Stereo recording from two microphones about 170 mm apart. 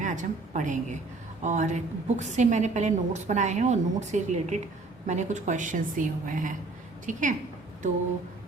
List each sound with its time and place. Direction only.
0.0 s a woman's voice: 45° right (ahead or behind)